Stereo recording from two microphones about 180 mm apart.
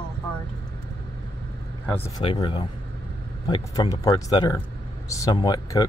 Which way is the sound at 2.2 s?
25° left (ahead or behind).